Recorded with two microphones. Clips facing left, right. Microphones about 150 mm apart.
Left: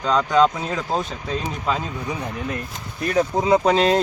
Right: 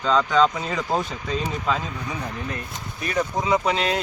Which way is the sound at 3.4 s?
35° left (ahead or behind).